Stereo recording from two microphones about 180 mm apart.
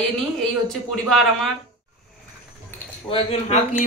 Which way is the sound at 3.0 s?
35° left (ahead or behind).